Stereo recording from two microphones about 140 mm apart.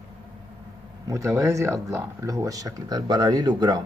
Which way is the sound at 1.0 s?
20° right (ahead or behind).